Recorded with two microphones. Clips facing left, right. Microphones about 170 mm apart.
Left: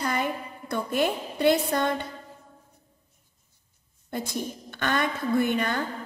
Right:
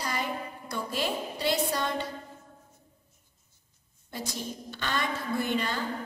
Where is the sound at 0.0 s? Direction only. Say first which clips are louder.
Left 5 dB; 55° left (ahead or behind).